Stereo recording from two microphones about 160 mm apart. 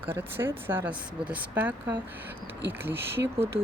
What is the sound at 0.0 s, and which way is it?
Speech, 10° right (ahead or behind).